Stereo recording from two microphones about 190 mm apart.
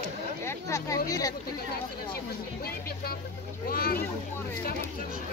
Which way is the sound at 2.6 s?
55° left (ahead or behind).